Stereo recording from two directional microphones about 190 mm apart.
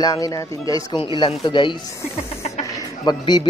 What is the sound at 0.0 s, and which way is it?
A man's voice, 20° left (ahead or behind).